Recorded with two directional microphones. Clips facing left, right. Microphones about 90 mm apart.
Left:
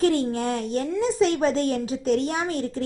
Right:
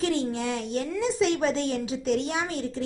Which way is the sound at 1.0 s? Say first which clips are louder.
Left 3 dB; 40° left (ahead or behind).